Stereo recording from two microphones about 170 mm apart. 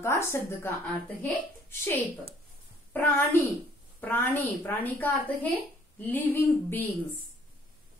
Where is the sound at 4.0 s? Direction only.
10° left (ahead or behind).